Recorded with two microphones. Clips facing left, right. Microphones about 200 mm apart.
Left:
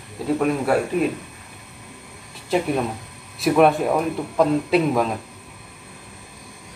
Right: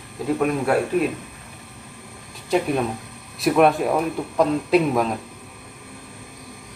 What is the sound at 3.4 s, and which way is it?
Speech, centre (ahead or behind).